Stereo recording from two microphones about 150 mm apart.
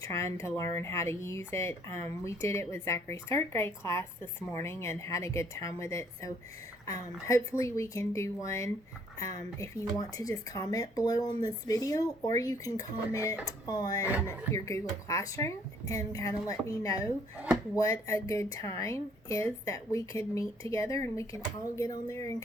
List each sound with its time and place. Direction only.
0.0 s speech: 20° left (ahead or behind)
14.0 s speech: 10° right (ahead or behind)
14.3 s speech: 20° left (ahead or behind)
18.1 s speech: 20° left (ahead or behind)